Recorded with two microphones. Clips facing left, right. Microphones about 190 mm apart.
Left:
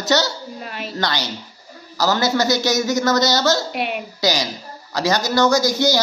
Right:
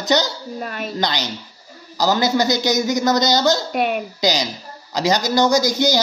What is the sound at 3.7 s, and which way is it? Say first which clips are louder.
Speech: right 4 dB; 45° right (ahead or behind).